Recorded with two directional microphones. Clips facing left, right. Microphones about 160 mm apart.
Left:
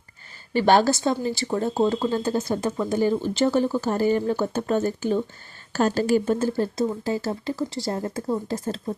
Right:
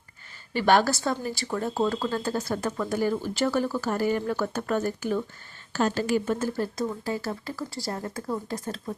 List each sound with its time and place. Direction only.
0.5 s speech: 30° left (ahead or behind)
5.7 s speech: 40° left (ahead or behind)